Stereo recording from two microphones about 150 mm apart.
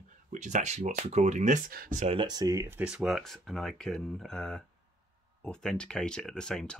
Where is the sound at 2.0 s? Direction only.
40° right (ahead or behind).